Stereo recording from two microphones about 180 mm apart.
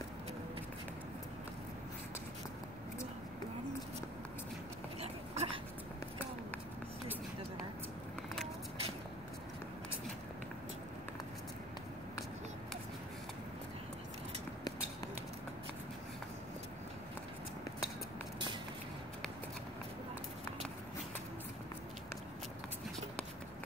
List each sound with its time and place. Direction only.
5.0 s dog: 35° right (ahead or behind)